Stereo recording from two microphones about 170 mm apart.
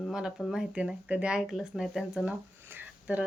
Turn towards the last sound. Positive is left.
turn(degrees=-10)  # may be behind; listen again after turning